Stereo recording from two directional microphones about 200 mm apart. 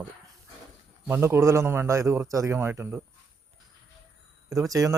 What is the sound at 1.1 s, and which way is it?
A man's voice, 15° right (ahead or behind).